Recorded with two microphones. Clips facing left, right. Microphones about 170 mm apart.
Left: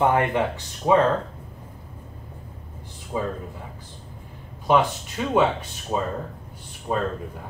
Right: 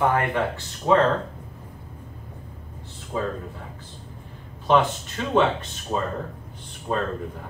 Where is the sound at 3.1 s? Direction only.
15° left (ahead or behind).